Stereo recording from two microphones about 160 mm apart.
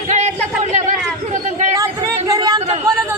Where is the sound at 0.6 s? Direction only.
45° right (ahead or behind).